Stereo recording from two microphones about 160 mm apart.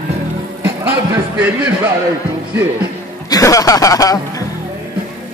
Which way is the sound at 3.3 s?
20° left (ahead or behind).